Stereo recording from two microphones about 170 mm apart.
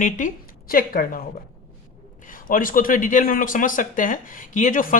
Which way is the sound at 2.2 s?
55° left (ahead or behind).